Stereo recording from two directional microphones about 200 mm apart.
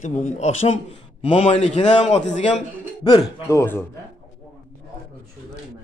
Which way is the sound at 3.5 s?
15° left (ahead or behind).